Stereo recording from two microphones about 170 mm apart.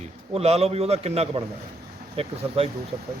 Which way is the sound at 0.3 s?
40° right (ahead or behind).